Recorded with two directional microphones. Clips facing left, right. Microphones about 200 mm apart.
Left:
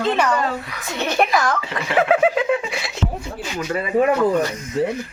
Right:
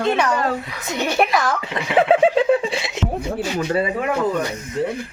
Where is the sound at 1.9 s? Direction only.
25° right (ahead or behind).